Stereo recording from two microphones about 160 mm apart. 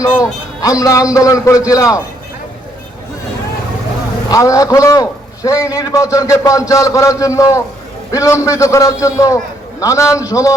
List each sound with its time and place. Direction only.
0.0 s a man's voice: 20° left (ahead or behind)
4.3 s a man's voice: 20° left (ahead or behind)